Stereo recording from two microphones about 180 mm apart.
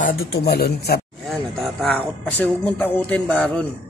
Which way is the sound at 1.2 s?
Centre (ahead or behind).